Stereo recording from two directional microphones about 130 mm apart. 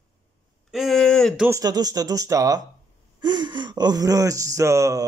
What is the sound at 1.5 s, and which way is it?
Speech, 30° right (ahead or behind).